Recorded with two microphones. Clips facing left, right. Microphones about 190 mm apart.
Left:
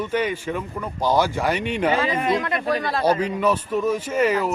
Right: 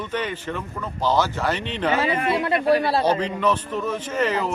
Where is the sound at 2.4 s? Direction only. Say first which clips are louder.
Right 4 dB; 30° right (ahead or behind).